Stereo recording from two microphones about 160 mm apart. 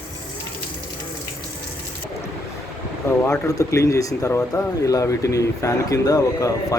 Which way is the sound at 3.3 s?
20° left (ahead or behind).